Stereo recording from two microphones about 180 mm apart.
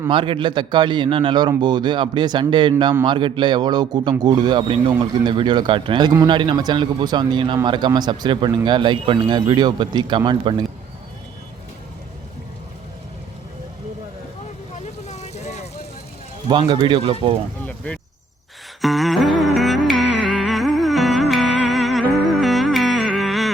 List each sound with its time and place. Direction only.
0.1 s speech: 25° right (ahead or behind)
15.0 s vehicle: 40° left (ahead or behind)
16.5 s speech: 25° right (ahead or behind)
17.7 s a sound: 5° left (ahead or behind)
18.8 s music: centre (ahead or behind)